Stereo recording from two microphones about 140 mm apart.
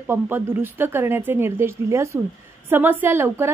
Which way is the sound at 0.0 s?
15° right (ahead or behind).